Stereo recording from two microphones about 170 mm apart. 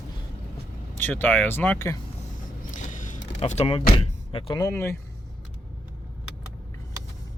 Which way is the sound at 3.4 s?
40° left (ahead or behind).